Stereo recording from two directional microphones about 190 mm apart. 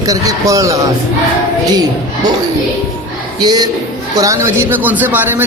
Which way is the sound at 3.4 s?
20° right (ahead or behind).